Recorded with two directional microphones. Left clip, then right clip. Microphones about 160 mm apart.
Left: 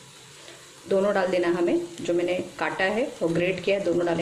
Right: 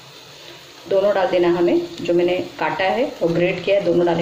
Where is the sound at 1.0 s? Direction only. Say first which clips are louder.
Right 7 dB; 25° left (ahead or behind).